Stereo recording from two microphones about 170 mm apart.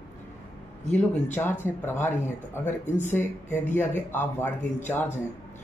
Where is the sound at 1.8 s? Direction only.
15° left (ahead or behind).